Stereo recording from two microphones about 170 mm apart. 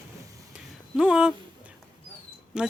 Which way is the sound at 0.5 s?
5° right (ahead or behind).